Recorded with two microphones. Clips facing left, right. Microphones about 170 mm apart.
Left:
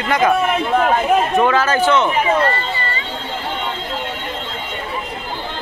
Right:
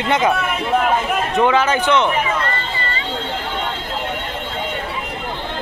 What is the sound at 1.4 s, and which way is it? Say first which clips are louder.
Speech: left 1 dB; 20° right (ahead or behind).